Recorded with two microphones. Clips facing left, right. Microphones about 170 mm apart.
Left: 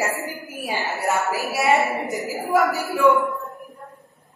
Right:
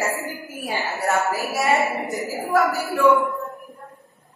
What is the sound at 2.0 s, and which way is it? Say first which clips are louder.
Speech: even; centre (ahead or behind).